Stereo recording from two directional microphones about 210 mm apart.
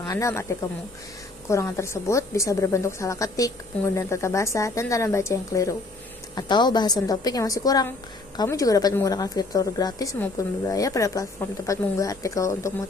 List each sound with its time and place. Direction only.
0.1 s a woman's voice: 15° left (ahead or behind)
1.5 s a woman's voice: 15° left (ahead or behind)